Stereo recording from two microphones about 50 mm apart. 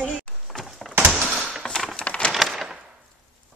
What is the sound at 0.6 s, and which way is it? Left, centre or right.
Door, centre.